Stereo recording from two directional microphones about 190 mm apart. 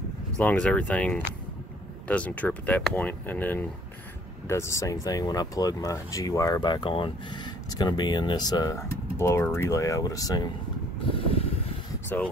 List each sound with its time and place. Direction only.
0.4 s speech: 5° left (ahead or behind)
11.1 s vehicle: 30° left (ahead or behind)
12.1 s speech: 10° left (ahead or behind)